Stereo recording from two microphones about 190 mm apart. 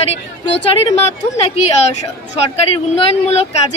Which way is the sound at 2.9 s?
30° left (ahead or behind).